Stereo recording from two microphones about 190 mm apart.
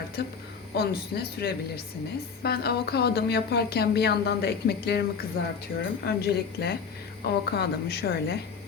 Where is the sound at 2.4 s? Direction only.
55° left (ahead or behind).